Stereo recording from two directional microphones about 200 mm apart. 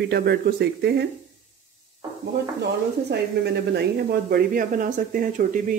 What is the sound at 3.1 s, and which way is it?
Speech, 55° right (ahead or behind).